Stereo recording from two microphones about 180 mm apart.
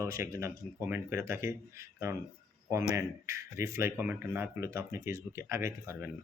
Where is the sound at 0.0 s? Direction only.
15° right (ahead or behind).